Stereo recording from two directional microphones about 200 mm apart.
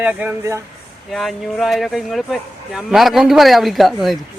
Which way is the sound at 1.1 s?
Centre (ahead or behind).